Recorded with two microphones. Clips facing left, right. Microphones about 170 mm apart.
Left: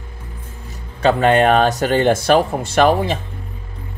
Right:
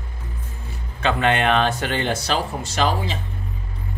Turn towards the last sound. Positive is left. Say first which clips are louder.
# left 8 dB
turn(degrees=55)  # may be behind; listen again after turning